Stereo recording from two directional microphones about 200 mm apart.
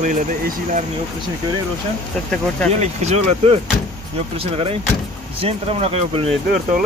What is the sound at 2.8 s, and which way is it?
Speech, 35° right (ahead or behind).